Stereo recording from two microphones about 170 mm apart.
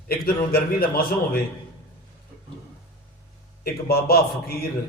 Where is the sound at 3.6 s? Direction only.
65° left (ahead or behind).